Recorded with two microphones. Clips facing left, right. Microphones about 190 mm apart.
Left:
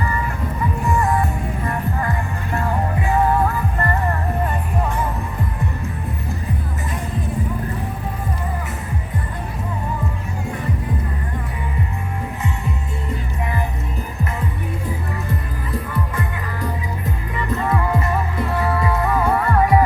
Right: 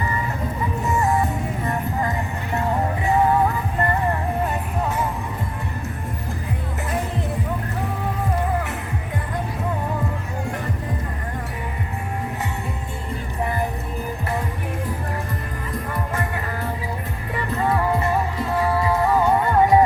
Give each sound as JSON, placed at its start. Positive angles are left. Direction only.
{"t": 0.8, "sound": "music", "side_deg": -25}
{"t": 17.3, "sound": "music", "side_deg": -30}